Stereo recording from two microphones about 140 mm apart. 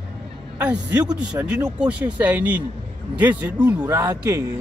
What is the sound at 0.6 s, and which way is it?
Speech, 10° right (ahead or behind).